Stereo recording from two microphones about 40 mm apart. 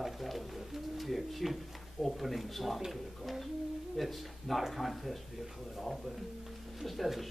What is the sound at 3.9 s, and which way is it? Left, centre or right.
Speech, centre.